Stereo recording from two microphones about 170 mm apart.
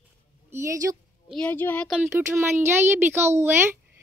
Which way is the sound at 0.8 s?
15° right (ahead or behind).